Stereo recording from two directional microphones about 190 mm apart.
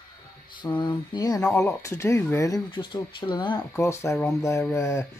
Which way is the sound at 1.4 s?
15° left (ahead or behind).